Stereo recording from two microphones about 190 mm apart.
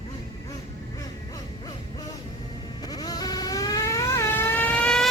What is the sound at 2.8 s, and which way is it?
Vehicle, 20° left (ahead or behind).